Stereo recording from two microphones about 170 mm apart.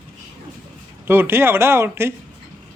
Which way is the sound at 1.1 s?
15° right (ahead or behind).